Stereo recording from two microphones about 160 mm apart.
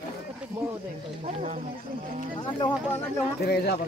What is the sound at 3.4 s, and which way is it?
Speech, 75° left (ahead or behind).